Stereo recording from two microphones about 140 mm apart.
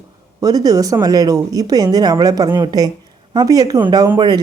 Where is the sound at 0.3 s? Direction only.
25° right (ahead or behind).